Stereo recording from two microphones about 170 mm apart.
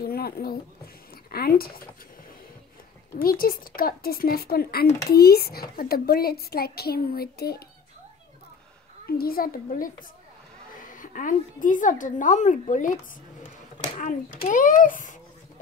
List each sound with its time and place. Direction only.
0.0 s a child's voice: 65° left (ahead or behind)
3.2 s a child's voice: 60° left (ahead or behind)
9.0 s a child's voice: 60° left (ahead or behind)
13.9 s a woman's voice: 50° left (ahead or behind)